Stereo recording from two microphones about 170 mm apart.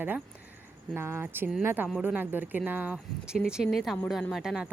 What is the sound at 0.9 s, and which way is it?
Speech, 15° right (ahead or behind).